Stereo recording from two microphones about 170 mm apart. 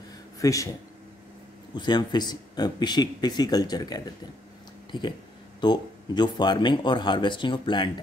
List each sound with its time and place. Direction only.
0.4 s speech: 20° left (ahead or behind)
1.8 s speech: 25° left (ahead or behind)
5.6 s speech: 25° left (ahead or behind)